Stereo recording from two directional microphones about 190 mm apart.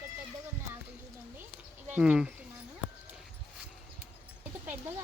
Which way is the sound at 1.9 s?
5° right (ahead or behind).